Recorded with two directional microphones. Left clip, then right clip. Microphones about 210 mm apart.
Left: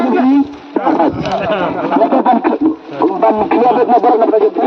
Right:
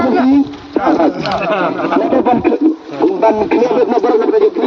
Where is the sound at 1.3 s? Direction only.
10° left (ahead or behind).